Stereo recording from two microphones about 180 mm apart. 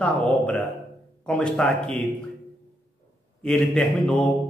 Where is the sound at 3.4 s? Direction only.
5° left (ahead or behind).